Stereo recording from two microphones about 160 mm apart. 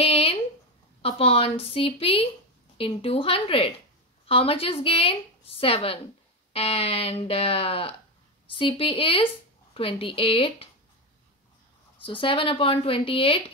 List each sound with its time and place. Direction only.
0.0 s a sound: 35° left (ahead or behind)
1.0 s speech: 35° left (ahead or behind)
12.0 s speech: 35° left (ahead or behind)